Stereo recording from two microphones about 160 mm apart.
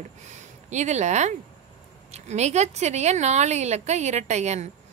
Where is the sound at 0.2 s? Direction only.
45° right (ahead or behind).